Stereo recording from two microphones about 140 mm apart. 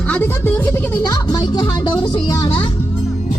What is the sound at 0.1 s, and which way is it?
Speech, 15° left (ahead or behind).